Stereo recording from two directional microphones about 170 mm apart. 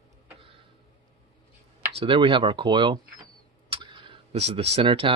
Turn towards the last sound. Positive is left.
turn(degrees=-30)  # may be behind; listen again after turning